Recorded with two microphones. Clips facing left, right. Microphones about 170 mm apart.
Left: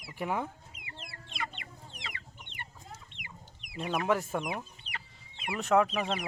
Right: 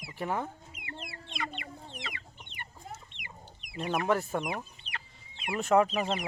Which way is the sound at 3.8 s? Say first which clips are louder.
Right 1 dB; centre (ahead or behind).